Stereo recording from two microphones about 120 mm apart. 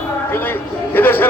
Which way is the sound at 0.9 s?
15° left (ahead or behind).